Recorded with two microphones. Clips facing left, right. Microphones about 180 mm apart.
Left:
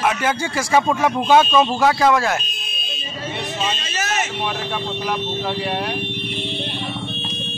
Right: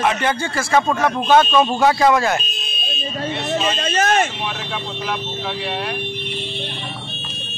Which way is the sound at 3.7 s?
55° right (ahead or behind).